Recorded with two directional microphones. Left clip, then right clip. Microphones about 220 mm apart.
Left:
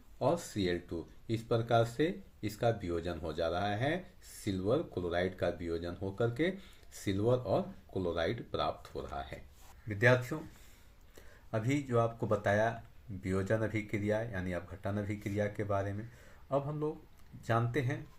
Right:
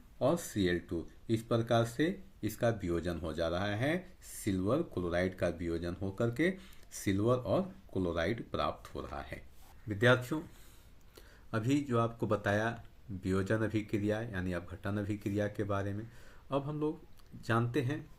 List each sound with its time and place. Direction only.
0.2 s speech: 40° right (ahead or behind)